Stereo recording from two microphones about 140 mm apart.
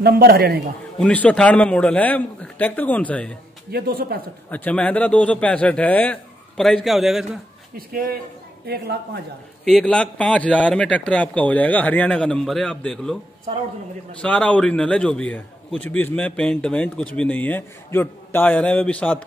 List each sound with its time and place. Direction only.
0.0 s speech: 90° right
0.9 s a man's voice: 5° left (ahead or behind)
3.7 s speech: 90° right
4.5 s a man's voice: 10° left (ahead or behind)
7.7 s speech: 90° right
9.7 s a man's voice: 5° left (ahead or behind)
14.2 s a man's voice: 10° left (ahead or behind)